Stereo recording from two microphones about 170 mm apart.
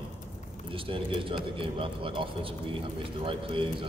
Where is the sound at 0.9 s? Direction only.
30° right (ahead or behind).